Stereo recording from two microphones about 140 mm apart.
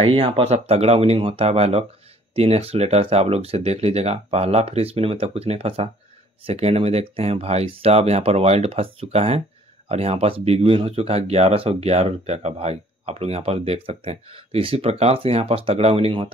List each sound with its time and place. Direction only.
0.0 s speech: 40° right (ahead or behind)